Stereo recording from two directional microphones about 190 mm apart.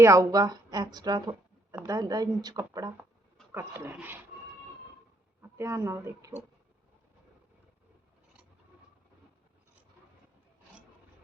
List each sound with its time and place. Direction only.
0.0 s speech: 15° right (ahead or behind)
5.4 s speech: 15° right (ahead or behind)